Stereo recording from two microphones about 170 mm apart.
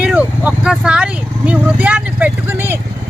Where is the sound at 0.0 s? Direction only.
10° right (ahead or behind).